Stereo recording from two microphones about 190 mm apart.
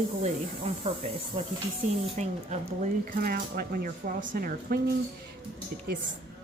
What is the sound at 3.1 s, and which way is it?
A woman's voice, 50° right (ahead or behind).